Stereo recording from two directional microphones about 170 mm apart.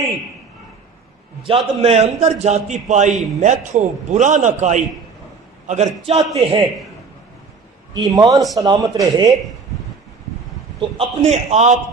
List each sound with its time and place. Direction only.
1.4 s a man's voice: 35° right (ahead or behind)
7.9 s speech: 25° right (ahead or behind)
11.2 s a man's voice: 40° right (ahead or behind)